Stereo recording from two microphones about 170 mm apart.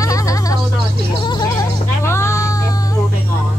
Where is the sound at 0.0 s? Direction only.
20° left (ahead or behind).